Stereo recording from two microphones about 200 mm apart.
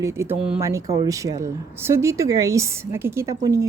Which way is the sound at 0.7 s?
15° right (ahead or behind).